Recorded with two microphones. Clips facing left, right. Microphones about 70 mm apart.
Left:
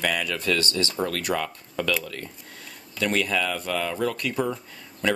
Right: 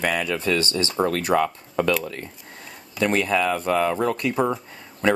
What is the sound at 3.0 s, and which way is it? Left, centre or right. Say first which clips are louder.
Speech: right 4 dB; right.